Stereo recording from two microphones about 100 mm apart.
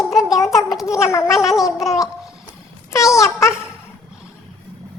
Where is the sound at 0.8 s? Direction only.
30° left (ahead or behind).